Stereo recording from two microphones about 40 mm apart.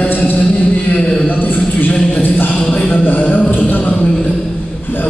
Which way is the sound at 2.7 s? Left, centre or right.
Centre.